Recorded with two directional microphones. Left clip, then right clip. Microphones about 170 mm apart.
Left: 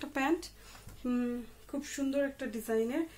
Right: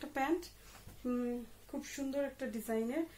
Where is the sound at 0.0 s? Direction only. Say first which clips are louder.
Left 3 dB; 20° left (ahead or behind).